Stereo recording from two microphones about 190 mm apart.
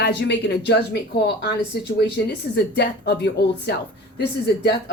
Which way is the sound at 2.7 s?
60° left (ahead or behind).